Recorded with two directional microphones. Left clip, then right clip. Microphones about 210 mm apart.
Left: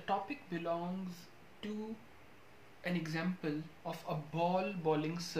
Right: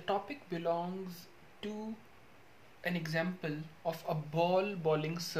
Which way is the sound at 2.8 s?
45° right (ahead or behind).